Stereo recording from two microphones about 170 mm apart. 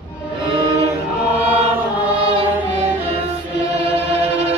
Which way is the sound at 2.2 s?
30° right (ahead or behind).